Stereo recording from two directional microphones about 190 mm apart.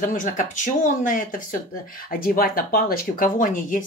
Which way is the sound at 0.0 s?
45° left (ahead or behind).